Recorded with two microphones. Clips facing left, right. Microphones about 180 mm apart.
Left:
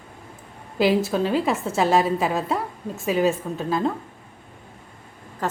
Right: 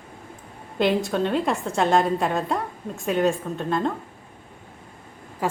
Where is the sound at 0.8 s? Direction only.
5° left (ahead or behind).